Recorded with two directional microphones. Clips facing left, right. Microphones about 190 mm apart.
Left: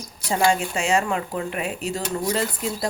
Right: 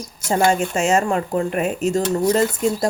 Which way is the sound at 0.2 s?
45° right (ahead or behind).